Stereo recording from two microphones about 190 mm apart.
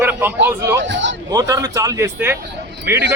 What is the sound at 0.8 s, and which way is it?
Speech, 75° right (ahead or behind).